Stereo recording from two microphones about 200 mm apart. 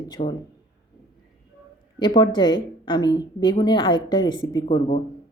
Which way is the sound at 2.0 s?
20° left (ahead or behind).